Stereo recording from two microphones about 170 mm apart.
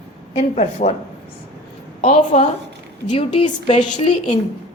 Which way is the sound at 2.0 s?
40° left (ahead or behind).